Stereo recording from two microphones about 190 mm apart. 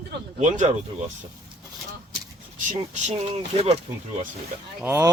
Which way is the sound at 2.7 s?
35° right (ahead or behind).